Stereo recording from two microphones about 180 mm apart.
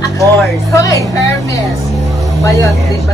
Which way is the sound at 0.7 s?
15° left (ahead or behind).